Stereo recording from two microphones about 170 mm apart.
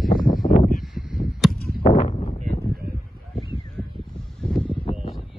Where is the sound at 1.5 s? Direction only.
65° left (ahead or behind).